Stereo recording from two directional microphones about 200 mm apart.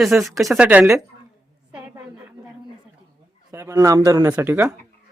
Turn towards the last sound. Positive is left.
turn(degrees=-10)  # may be behind; listen again after turning